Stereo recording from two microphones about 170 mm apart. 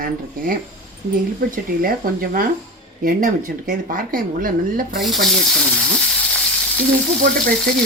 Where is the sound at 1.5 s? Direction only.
55° right (ahead or behind).